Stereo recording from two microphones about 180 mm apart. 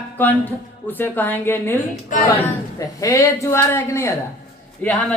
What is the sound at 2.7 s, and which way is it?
A man's voice, 20° left (ahead or behind).